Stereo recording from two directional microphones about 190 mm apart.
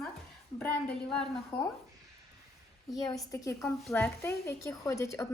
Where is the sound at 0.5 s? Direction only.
5° left (ahead or behind).